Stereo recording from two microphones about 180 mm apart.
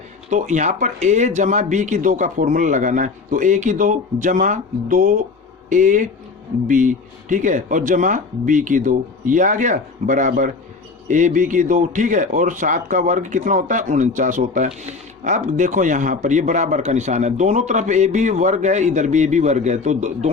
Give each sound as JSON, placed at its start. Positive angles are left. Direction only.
{"t": 0.3, "sound": "a man's voice", "side_deg": -40}